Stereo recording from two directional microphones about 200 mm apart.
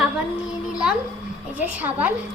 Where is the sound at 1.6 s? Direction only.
10° right (ahead or behind).